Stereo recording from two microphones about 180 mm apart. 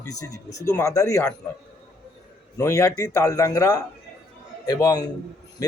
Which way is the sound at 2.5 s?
15° left (ahead or behind).